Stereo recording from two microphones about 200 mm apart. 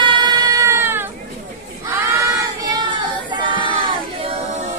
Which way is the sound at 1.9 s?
15° right (ahead or behind).